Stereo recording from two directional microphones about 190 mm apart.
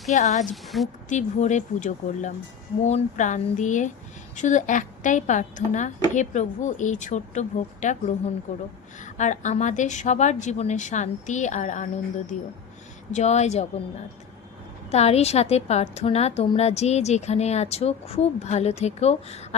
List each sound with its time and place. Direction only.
0.1 s a woman's voice: 40° left (ahead or behind)
0.5 s a woman's voice: centre (ahead or behind)
1.1 s a woman's voice: 40° left (ahead or behind)
14.8 s a woman's voice: 35° left (ahead or behind)